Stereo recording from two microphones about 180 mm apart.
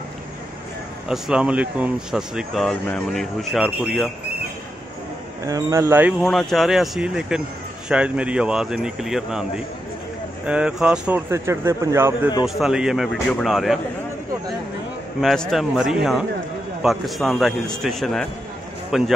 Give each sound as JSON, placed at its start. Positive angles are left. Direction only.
{"t": 1.0, "sound": "speech", "side_deg": -5}
{"t": 5.4, "sound": "speech", "side_deg": -20}
{"t": 6.2, "sound": "speech", "side_deg": 0}
{"t": 12.4, "sound": "speech", "side_deg": 0}
{"t": 15.1, "sound": "speech", "side_deg": 0}